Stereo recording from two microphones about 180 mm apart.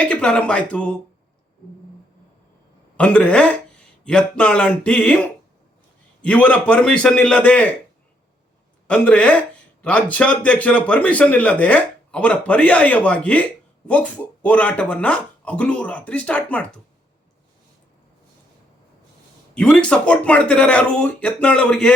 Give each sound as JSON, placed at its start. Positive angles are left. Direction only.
{"t": 0.0, "sound": "speech", "side_deg": 5}
{"t": 3.0, "sound": "speech", "side_deg": 5}
{"t": 6.2, "sound": "speech", "side_deg": 5}
{"t": 8.9, "sound": "speech", "side_deg": 10}
{"t": 19.5, "sound": "speech", "side_deg": 5}